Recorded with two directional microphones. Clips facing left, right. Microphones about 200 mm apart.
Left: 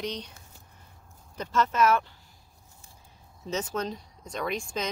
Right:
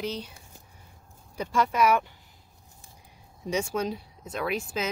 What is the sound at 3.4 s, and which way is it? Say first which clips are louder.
Speech: right 3 dB; 10° right (ahead or behind).